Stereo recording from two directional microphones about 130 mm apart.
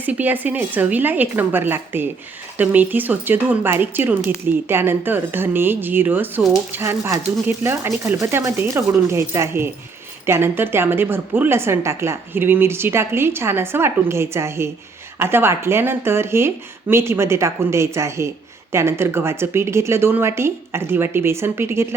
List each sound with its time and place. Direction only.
0.0 s a woman's voice: 15° right (ahead or behind)